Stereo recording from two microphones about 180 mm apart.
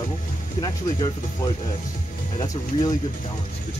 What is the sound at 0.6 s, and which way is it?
Speech, 25° left (ahead or behind).